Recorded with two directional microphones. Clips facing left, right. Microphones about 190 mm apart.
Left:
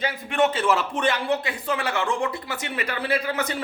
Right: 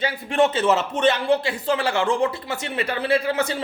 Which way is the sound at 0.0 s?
30° right (ahead or behind).